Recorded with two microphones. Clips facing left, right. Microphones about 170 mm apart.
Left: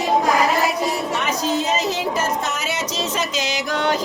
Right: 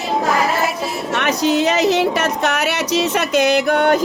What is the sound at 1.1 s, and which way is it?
Speech, 70° right (ahead or behind).